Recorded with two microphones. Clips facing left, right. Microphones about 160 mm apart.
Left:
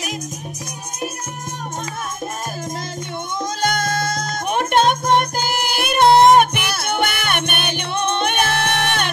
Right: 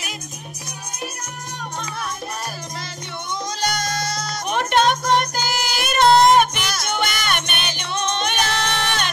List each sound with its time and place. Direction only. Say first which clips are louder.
3.6 s music: left 4 dB; 50° left (ahead or behind)